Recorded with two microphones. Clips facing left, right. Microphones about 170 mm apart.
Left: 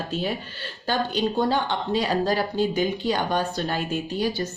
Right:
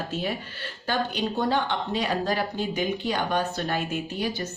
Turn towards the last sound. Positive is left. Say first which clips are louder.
# left 3 dB
turn(degrees=35)  # may be behind; listen again after turning